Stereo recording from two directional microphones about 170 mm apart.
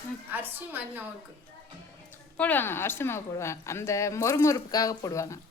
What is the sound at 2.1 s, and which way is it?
A woman's voice, 10° left (ahead or behind).